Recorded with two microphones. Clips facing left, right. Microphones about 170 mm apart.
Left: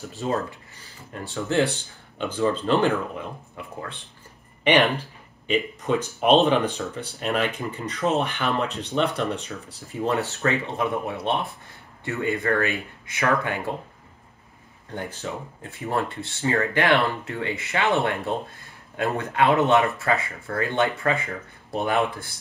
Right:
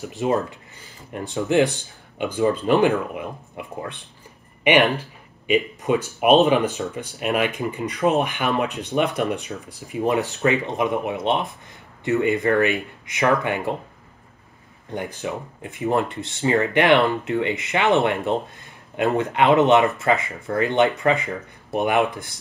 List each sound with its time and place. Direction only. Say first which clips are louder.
0.1 s speech: right 4 dB; 15° right (ahead or behind)
5.5 s speech: right 3 dB; 10° right (ahead or behind)
14.9 s speech: right 4 dB; 15° right (ahead or behind)